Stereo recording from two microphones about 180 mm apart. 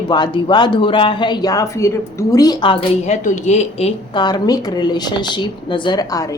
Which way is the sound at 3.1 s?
40° left (ahead or behind).